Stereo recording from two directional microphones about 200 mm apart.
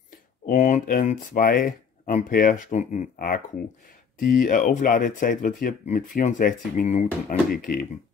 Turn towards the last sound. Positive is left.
turn(degrees=45)  # may be behind; listen again after turning